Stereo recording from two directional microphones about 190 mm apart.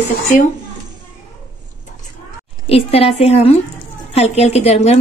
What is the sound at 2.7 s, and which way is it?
A woman's voice, 30° left (ahead or behind).